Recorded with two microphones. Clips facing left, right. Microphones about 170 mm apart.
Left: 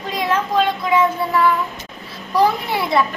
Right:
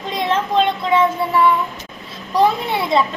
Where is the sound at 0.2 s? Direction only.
25° right (ahead or behind).